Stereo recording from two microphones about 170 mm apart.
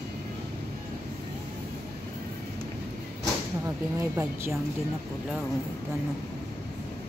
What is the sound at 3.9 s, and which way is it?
Speech, 15° right (ahead or behind).